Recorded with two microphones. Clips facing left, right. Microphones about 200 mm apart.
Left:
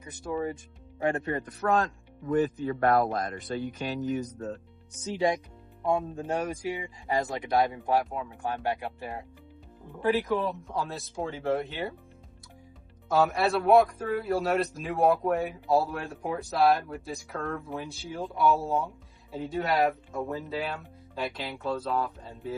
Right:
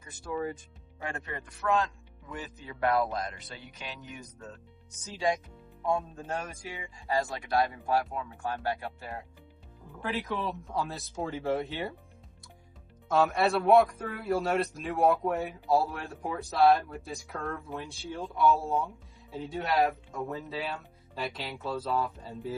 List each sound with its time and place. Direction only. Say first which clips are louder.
0.0 s speech: left 3 dB; 20° left (ahead or behind)
1.0 s speech: left 10 dB; 35° left (ahead or behind)
5.9 s speech: left 3 dB; 15° left (ahead or behind)
10.1 s a man's voice: left 7 dB; centre (ahead or behind)
13.1 s a man's voice: left 1 dB; centre (ahead or behind)